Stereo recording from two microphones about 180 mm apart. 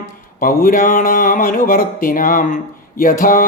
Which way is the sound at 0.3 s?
50° left (ahead or behind).